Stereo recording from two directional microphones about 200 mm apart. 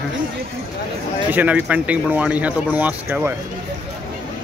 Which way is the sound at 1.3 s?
10° right (ahead or behind).